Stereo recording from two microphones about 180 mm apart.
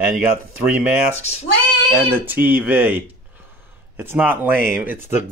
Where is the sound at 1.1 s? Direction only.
35° left (ahead or behind).